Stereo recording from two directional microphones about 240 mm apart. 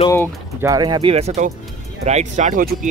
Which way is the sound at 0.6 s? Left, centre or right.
Centre.